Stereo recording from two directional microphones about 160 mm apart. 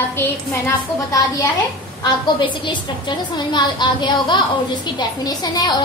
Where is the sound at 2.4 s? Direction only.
30° left (ahead or behind).